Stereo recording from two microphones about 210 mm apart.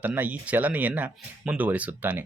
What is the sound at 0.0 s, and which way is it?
Speech, 10° right (ahead or behind).